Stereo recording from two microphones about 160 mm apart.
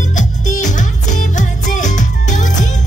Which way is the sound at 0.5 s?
50° left (ahead or behind).